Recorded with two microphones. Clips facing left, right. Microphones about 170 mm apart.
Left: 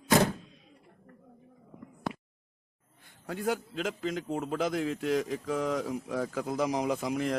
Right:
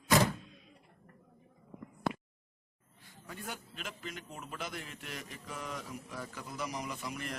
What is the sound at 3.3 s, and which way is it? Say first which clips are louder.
A man's voice: left 13 dB; 90° left.